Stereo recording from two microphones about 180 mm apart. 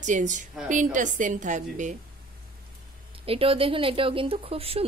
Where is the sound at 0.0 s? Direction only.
45° right (ahead or behind).